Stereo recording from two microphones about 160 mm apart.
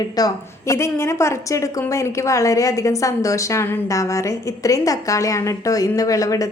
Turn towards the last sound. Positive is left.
turn(degrees=20)  # may be behind; listen again after turning